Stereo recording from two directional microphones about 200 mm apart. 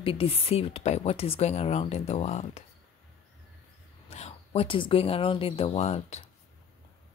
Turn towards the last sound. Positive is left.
turn(degrees=30)  # may be behind; listen again after turning